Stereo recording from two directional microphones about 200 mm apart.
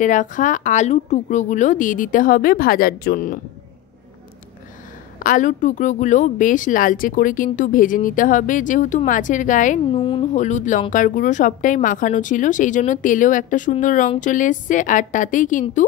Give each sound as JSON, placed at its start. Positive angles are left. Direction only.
{"t": 0.0, "sound": "speech", "side_deg": 40}
{"t": 5.2, "sound": "speech", "side_deg": 40}